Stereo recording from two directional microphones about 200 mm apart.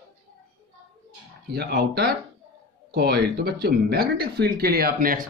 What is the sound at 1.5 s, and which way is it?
Speech, 50° right (ahead or behind).